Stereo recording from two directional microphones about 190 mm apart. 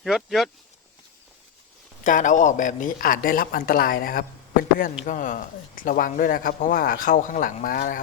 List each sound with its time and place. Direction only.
0.0 s speech: centre (ahead or behind)
2.0 s speech: 40° left (ahead or behind)